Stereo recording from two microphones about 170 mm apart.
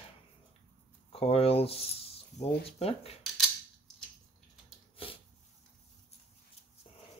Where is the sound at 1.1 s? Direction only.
35° left (ahead or behind).